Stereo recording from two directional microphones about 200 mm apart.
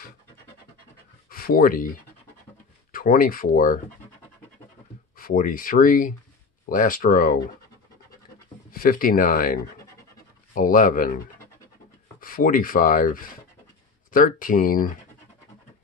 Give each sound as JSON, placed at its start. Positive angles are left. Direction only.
{"t": 1.3, "sound": "speech", "side_deg": 45}
{"t": 2.9, "sound": "speech", "side_deg": 45}
{"t": 5.1, "sound": "speech", "side_deg": 45}
{"t": 8.7, "sound": "speech", "side_deg": 45}
{"t": 12.2, "sound": "speech", "side_deg": 45}